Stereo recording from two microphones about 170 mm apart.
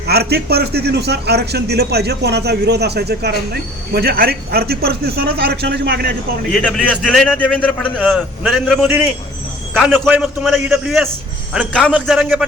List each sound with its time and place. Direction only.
0.1 s a man's voice: 70° right (ahead or behind)
6.5 s a man's voice: 5° left (ahead or behind)
7.9 s a man's voice: 5° right (ahead or behind)